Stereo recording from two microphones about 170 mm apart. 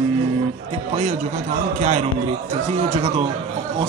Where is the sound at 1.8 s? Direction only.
45° right (ahead or behind).